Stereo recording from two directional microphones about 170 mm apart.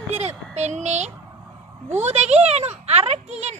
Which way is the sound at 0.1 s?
40° right (ahead or behind).